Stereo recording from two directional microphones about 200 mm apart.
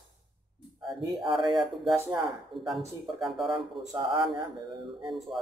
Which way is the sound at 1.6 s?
Centre (ahead or behind).